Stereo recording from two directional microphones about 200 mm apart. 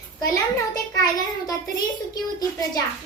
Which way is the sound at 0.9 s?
20° left (ahead or behind).